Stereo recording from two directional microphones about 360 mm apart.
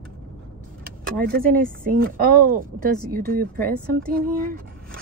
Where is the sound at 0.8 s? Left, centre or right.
Right.